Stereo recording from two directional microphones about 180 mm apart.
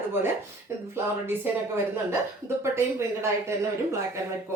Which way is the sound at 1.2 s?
15° right (ahead or behind).